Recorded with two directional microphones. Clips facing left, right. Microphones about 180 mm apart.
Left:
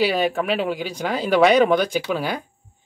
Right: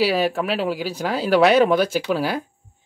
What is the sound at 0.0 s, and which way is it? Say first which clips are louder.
Speech: even; 5° right (ahead or behind).